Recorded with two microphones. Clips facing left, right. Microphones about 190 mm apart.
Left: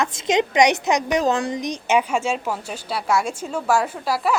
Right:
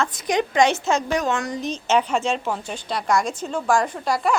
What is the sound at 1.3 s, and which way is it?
Speech, 35° left (ahead or behind).